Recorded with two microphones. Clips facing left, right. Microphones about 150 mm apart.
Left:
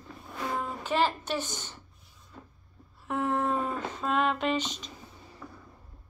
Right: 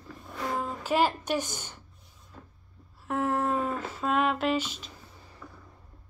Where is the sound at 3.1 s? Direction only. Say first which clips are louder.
Right 1 dB; 5° right (ahead or behind).